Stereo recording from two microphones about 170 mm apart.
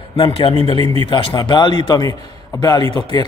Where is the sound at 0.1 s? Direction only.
35° left (ahead or behind).